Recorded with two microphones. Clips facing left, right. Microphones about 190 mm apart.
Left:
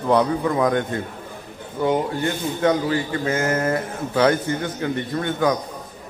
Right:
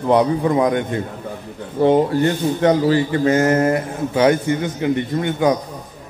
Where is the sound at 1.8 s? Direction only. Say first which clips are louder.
Right 7 dB; 30° right (ahead or behind).